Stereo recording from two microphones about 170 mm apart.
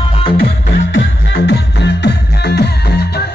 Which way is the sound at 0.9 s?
85° left.